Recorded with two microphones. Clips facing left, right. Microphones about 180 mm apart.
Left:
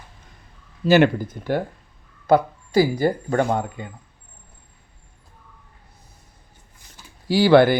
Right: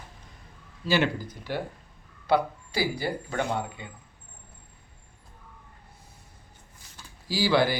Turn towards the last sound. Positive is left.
turn(degrees=60)  # may be behind; listen again after turning